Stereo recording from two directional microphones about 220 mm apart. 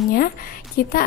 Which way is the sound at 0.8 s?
45° left (ahead or behind).